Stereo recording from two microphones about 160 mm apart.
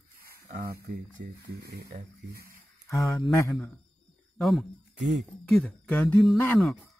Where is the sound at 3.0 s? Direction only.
Centre (ahead or behind).